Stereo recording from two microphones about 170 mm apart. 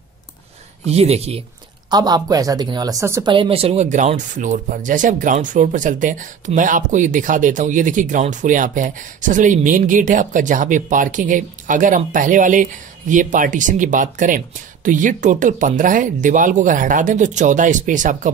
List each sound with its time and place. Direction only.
0.8 s speech: 40° right (ahead or behind)
1.9 s a woman's voice: 25° right (ahead or behind)
3.3 s speech: 35° right (ahead or behind); by 18.3 s 50° right (ahead or behind)